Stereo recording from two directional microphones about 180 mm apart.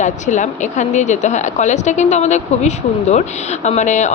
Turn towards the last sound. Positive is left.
turn(degrees=40)  # may be behind; listen again after turning